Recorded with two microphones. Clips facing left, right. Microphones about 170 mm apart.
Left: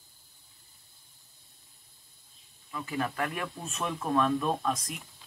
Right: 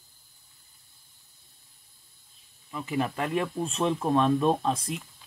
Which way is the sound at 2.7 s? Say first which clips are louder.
Right 4 dB; 20° right (ahead or behind).